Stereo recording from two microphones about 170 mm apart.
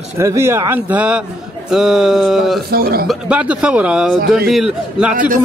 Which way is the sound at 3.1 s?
5° right (ahead or behind).